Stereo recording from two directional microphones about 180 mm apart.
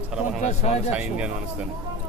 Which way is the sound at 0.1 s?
5° right (ahead or behind).